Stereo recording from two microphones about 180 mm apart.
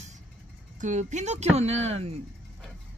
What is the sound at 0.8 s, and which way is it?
Speech, 40° right (ahead or behind).